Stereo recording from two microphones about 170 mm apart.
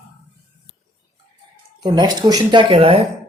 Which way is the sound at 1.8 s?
25° right (ahead or behind).